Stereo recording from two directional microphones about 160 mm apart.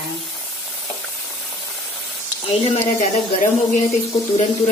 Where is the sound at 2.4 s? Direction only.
35° left (ahead or behind).